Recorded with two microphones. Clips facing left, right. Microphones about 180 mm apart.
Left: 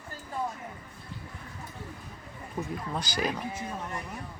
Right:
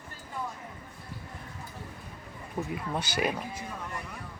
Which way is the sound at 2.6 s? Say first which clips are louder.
Right 1 dB; 5° right (ahead or behind).